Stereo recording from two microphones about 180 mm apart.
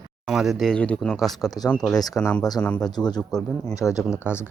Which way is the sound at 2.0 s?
20° left (ahead or behind).